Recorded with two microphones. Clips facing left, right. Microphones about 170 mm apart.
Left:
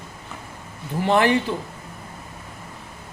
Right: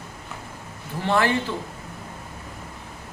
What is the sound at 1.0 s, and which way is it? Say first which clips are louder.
Speech: left 3 dB; 15° left (ahead or behind).